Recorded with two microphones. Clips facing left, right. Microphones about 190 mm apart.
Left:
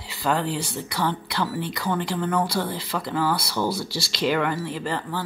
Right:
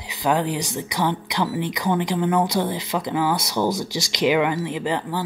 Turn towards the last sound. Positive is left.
turn(degrees=-15)  # may be behind; listen again after turning